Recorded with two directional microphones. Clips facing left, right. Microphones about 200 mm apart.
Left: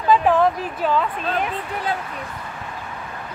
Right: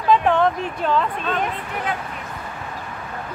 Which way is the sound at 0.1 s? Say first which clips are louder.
Left 1 dB; 5° left (ahead or behind).